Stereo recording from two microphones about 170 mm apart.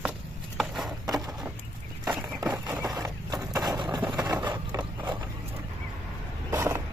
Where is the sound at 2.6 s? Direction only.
20° right (ahead or behind).